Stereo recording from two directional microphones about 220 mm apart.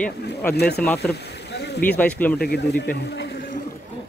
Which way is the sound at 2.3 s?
50° left (ahead or behind).